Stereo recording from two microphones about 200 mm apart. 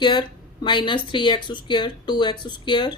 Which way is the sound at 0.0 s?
20° left (ahead or behind).